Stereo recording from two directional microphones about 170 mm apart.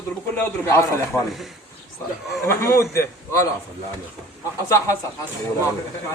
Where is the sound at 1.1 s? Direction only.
Centre (ahead or behind).